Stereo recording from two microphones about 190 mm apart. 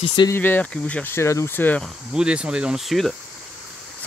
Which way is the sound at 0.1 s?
25° left (ahead or behind).